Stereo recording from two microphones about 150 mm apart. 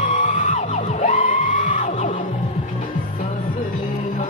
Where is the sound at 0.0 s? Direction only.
60° left (ahead or behind).